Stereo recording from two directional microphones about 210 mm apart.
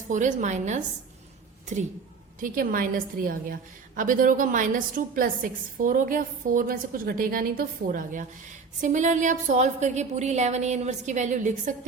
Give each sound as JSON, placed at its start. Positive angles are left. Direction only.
{"t": 0.1, "sound": "a woman's voice", "side_deg": -35}